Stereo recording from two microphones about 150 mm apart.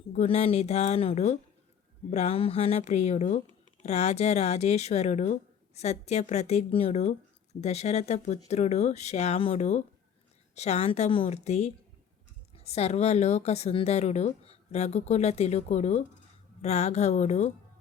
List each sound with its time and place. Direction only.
0.1 s speech: 45° left (ahead or behind)